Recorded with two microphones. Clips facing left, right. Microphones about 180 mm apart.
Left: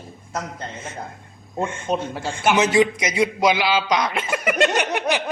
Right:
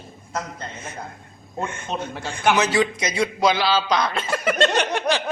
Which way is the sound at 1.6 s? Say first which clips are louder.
Left 4 dB; 25° left (ahead or behind).